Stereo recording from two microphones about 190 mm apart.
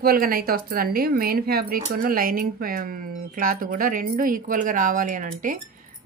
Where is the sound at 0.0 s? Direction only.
50° right (ahead or behind).